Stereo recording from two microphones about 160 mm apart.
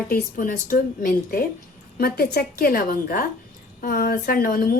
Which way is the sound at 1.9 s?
75° left (ahead or behind).